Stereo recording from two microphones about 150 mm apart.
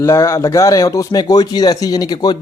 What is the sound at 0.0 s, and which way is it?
Speech, 20° left (ahead or behind).